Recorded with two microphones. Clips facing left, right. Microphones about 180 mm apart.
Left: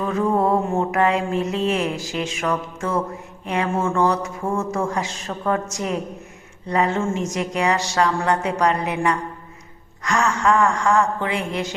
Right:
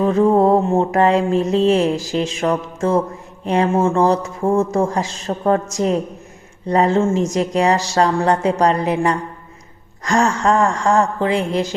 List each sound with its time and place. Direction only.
0.0 s speech: 30° right (ahead or behind)
0.6 s mantra: 25° right (ahead or behind)
0.9 s speech: 35° right (ahead or behind)